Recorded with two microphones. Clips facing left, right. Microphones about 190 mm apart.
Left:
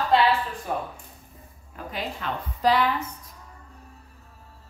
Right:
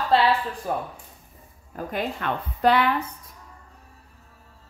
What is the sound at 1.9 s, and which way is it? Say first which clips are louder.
A woman's voice: right 4 dB; 55° right (ahead or behind).